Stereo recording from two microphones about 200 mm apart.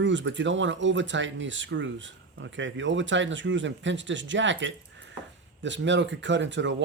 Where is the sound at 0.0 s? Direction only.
65° right (ahead or behind).